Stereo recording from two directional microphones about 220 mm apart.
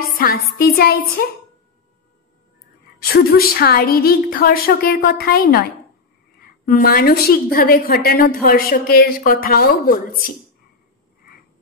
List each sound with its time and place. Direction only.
0.2 s speech: 45° left (ahead or behind)
3.0 s a woman's voice: 45° left (ahead or behind)